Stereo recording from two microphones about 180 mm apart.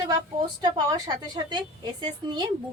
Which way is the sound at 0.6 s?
25° right (ahead or behind).